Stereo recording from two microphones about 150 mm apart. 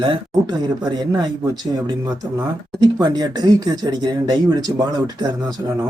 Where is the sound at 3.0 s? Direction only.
25° right (ahead or behind).